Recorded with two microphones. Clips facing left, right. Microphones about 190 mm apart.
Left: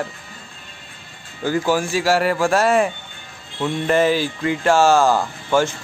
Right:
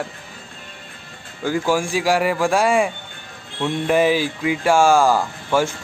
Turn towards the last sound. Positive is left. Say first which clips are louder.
# left 1 dB
turn(degrees=-10)  # may be behind; listen again after turning